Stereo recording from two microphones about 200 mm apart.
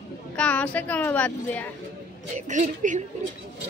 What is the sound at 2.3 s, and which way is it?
Speech, 35° right (ahead or behind).